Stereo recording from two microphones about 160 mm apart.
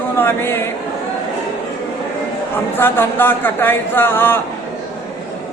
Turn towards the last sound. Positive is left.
turn(degrees=15)  # may be behind; listen again after turning